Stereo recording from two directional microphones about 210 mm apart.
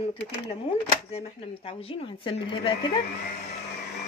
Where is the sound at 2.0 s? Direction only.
25° left (ahead or behind).